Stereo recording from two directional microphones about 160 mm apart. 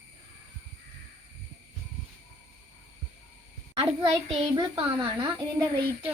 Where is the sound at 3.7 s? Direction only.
25° right (ahead or behind).